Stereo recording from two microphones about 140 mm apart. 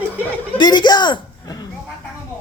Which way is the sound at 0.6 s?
30° left (ahead or behind).